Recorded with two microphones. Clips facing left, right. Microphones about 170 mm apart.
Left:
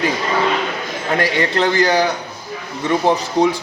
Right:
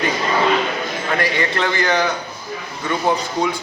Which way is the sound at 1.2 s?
35° left (ahead or behind).